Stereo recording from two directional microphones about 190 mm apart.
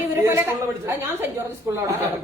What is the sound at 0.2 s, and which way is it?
A man's voice, 15° right (ahead or behind).